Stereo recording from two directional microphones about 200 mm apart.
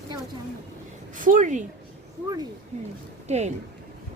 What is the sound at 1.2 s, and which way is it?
Speech, 40° right (ahead or behind).